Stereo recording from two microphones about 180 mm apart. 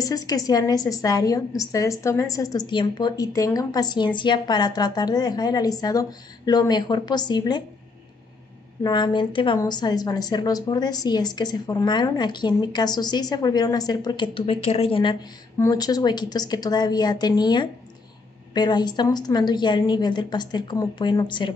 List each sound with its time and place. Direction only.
0.0 s a woman's voice: 20° left (ahead or behind)
8.8 s a woman's voice: 25° left (ahead or behind)